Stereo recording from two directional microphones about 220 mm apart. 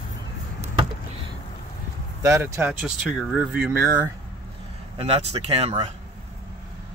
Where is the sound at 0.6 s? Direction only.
25° right (ahead or behind).